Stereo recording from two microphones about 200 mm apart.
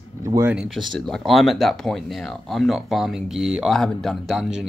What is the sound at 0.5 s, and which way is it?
Speech, 5° right (ahead or behind).